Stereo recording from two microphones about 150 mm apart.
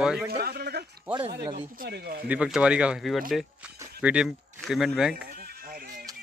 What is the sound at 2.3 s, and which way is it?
Speech, 5° right (ahead or behind).